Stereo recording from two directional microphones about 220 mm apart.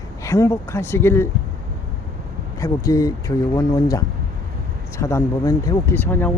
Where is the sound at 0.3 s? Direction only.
10° left (ahead or behind).